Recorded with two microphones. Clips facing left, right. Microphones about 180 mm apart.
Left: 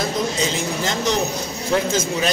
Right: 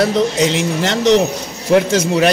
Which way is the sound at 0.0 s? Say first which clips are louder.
Right 8 dB; 80° right.